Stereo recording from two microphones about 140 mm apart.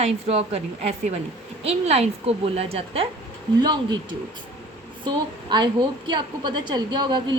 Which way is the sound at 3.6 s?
30° right (ahead or behind).